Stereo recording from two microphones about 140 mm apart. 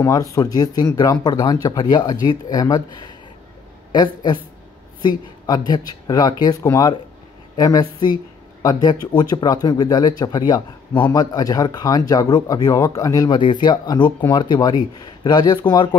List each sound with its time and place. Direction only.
0.0 s speech: 25° left (ahead or behind)